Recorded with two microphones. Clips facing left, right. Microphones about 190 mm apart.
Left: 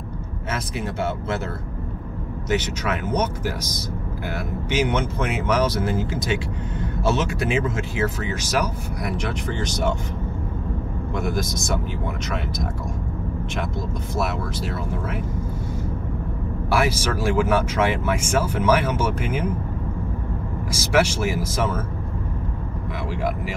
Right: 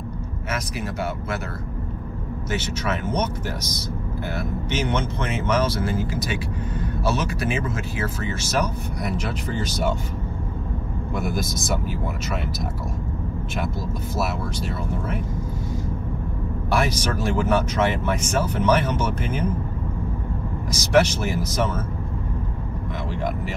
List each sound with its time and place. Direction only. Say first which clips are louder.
2.5 s speech: left 3 dB; 15° left (ahead or behind)
9.0 s speech: left 1 dB; centre (ahead or behind)
11.1 s speech: left 1 dB; 5° right (ahead or behind)
14.1 s speech: left 1 dB; centre (ahead or behind)
16.7 s speech: left 1 dB; 5° left (ahead or behind)
20.9 s speech: right 1 dB; 10° left (ahead or behind)